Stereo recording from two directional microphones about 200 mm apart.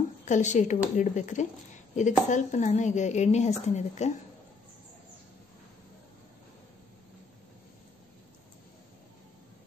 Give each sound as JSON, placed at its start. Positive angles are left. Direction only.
{"t": 0.2, "sound": "a woman's voice", "side_deg": 35}